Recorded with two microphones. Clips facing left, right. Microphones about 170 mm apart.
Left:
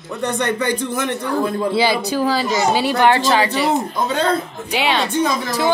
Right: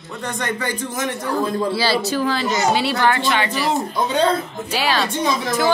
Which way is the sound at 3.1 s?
35° left (ahead or behind).